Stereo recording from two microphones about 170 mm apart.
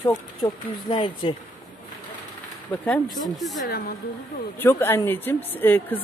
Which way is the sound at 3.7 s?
60° left (ahead or behind).